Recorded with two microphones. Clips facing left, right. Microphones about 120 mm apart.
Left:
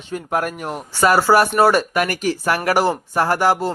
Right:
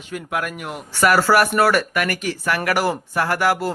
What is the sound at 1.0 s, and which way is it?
Speech, 25° left (ahead or behind).